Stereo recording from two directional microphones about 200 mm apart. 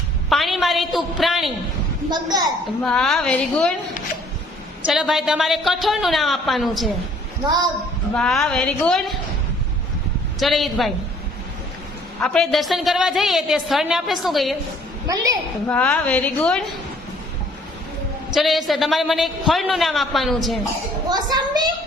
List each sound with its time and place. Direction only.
0.3 s a woman's voice: centre (ahead or behind)
2.0 s a child's voice: 20° right (ahead or behind)
2.8 s a woman's voice: centre (ahead or behind)
4.9 s a woman's voice: centre (ahead or behind)
8.1 s a woman's voice: 5° left (ahead or behind)
10.4 s a woman's voice: centre (ahead or behind)
12.2 s a woman's voice: 5° left (ahead or behind)
15.0 s a woman's voice: 15° right (ahead or behind)
15.6 s a woman's voice: 5° left (ahead or behind)
18.3 s a woman's voice: centre (ahead or behind)
21.1 s a child's voice: 20° right (ahead or behind)